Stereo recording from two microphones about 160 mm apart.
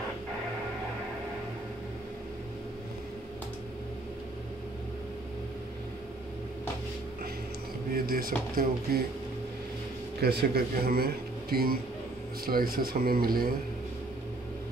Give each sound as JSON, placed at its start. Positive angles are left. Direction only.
{"t": 7.9, "sound": "a man's voice", "side_deg": -65}
{"t": 10.2, "sound": "a man's voice", "side_deg": -80}